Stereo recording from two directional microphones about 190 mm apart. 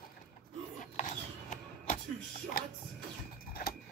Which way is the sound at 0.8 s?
40° left (ahead or behind).